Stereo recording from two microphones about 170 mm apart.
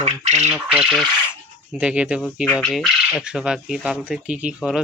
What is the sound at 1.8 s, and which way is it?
Speech, 5° right (ahead or behind).